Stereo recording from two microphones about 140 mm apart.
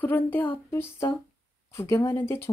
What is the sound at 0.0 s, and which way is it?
Speech, 15° left (ahead or behind).